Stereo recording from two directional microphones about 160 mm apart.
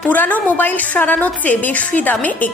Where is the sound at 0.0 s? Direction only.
10° left (ahead or behind).